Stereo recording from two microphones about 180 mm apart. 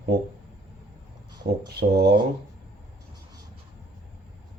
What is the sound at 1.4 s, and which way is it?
Speech, 60° right (ahead or behind).